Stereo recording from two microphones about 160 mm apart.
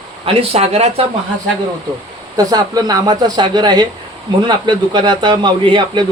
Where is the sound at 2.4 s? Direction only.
20° right (ahead or behind).